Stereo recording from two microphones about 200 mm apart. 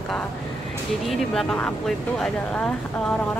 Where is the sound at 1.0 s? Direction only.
5° left (ahead or behind).